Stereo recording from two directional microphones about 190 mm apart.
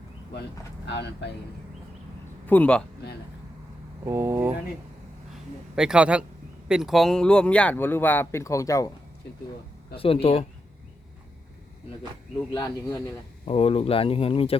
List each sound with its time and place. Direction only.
0.9 s speech: 65° left (ahead or behind)
2.5 s speech: 5° left (ahead or behind)
4.0 s speech: 10° right (ahead or behind)
5.7 s a man's voice: 5° right (ahead or behind); by 8.9 s 15° left (ahead or behind)
10.0 s speech: 30° left (ahead or behind)
12.5 s speech: 15° left (ahead or behind)
13.4 s speech: 30° left (ahead or behind)